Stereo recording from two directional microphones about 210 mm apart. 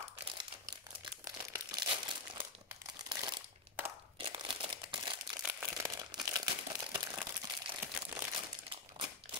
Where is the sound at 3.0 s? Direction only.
20° right (ahead or behind).